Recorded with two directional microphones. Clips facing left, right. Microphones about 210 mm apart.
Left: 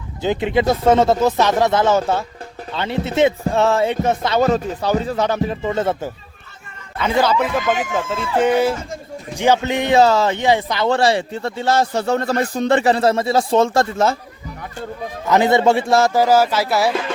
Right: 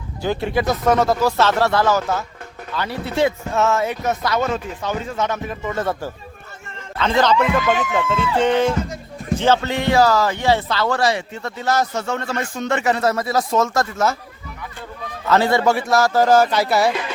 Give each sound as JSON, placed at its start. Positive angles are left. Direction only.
{"t": 0.2, "sound": "speech", "side_deg": 20}
{"t": 7.0, "sound": "a man's voice", "side_deg": 10}
{"t": 15.3, "sound": "speech", "side_deg": 20}
{"t": 16.1, "sound": "speech", "side_deg": 10}